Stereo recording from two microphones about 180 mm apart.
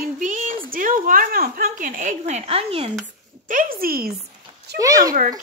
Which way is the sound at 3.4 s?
50° right (ahead or behind).